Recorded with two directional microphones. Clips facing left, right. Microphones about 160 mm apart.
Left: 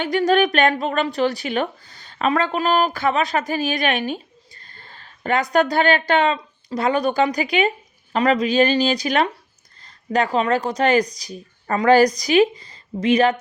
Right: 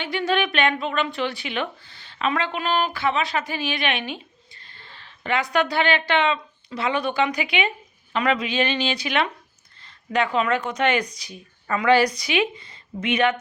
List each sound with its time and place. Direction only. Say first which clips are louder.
0.0 s a woman's voice: left 6 dB; 45° left (ahead or behind)